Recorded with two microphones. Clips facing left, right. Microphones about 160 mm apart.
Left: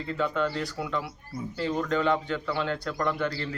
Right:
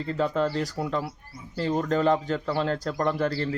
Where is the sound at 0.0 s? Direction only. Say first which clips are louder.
Right 3 dB; 35° right (ahead or behind).